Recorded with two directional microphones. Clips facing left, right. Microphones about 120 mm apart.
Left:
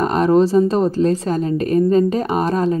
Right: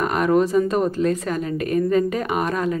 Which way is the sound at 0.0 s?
30° left (ahead or behind).